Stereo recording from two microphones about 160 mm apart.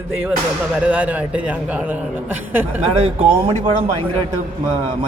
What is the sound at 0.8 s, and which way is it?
Speech, 10° right (ahead or behind).